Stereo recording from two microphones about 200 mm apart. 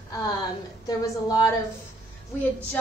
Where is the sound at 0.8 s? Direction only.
20° left (ahead or behind).